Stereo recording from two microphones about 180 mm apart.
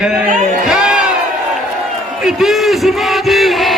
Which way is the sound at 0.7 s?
5° right (ahead or behind).